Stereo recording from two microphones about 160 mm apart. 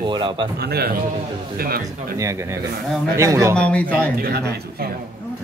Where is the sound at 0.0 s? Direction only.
30° right (ahead or behind).